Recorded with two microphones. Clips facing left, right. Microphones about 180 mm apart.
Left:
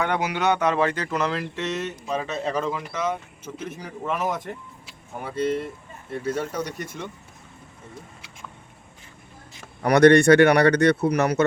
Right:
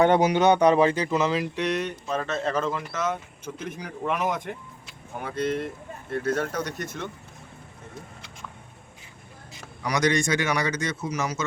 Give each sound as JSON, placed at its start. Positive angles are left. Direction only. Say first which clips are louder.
{"t": 0.2, "sound": "speech", "louder": "right 4 dB", "side_deg": -20}
{"t": 2.5, "sound": "speech", "louder": "left 2 dB", "side_deg": 0}
{"t": 9.8, "sound": "speech", "louder": "left 10 dB", "side_deg": 60}